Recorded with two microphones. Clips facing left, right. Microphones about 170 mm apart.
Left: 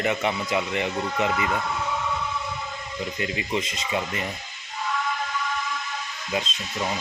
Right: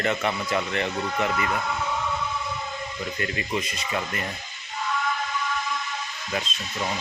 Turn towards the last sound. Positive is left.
turn(degrees=20)  # may be behind; listen again after turning